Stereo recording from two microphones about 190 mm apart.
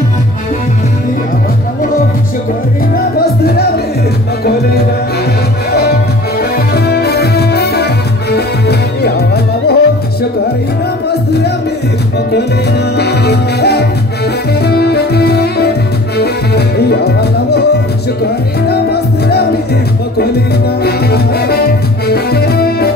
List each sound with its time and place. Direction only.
3.2 s music: 55° left (ahead or behind)
5.7 s music: 55° left (ahead or behind)
11.1 s music: 60° left (ahead or behind)
12.9 s music: 60° left (ahead or behind)
18.7 s music: 55° left (ahead or behind)